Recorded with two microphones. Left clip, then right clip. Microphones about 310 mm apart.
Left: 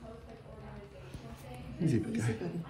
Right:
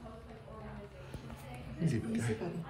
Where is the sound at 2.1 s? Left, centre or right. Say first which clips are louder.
Even; centre.